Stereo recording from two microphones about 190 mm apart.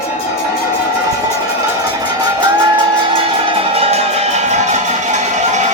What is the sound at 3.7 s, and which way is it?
Music, 35° right (ahead or behind).